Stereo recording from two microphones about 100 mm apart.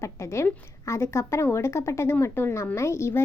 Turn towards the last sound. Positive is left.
turn(degrees=25)  # may be behind; listen again after turning